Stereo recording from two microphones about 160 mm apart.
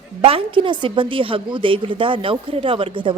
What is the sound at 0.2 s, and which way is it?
A woman's voice, 35° right (ahead or behind).